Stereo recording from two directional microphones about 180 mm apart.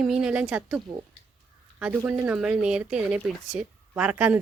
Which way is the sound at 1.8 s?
5° right (ahead or behind).